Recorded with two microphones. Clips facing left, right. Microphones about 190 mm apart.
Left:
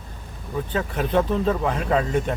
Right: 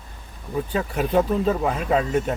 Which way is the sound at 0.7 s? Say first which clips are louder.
Right 1 dB; 10° right (ahead or behind).